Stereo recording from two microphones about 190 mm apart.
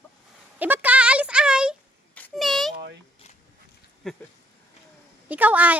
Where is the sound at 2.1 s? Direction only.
5° left (ahead or behind).